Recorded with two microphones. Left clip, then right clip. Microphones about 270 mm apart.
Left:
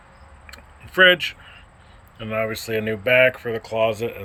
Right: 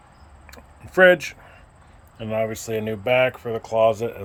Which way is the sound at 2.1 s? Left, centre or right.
Centre.